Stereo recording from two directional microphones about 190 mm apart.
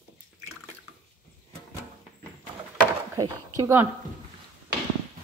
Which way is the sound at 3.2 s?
15° right (ahead or behind).